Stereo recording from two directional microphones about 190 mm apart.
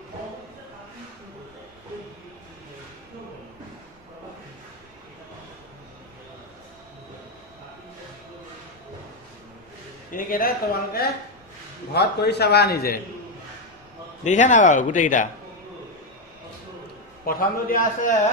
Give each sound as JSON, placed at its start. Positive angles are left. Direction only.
{"t": 10.1, "sound": "a man's voice", "side_deg": 50}
{"t": 14.2, "sound": "speech", "side_deg": 40}
{"t": 17.3, "sound": "a man's voice", "side_deg": 50}